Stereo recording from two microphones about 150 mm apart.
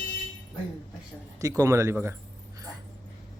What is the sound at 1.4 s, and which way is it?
Speech, 20° right (ahead or behind).